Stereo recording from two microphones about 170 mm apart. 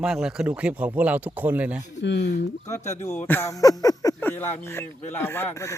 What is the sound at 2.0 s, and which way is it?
Speech, 90° left.